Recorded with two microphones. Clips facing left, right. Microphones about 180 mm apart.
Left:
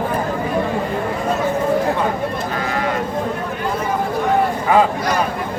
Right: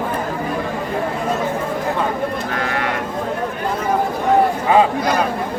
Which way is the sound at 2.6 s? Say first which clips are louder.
Left 1 dB; 70° right (ahead or behind).